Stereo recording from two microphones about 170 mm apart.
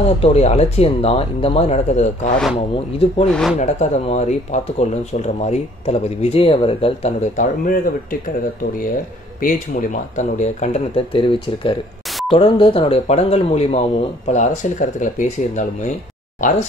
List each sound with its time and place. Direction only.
0.2 s speech: 40° left (ahead or behind)
3.3 s speech: 5° left (ahead or behind)
3.5 s speech: 45° left (ahead or behind)
7.3 s speech: 55° left (ahead or behind)
9.4 s speech: 50° left (ahead or behind)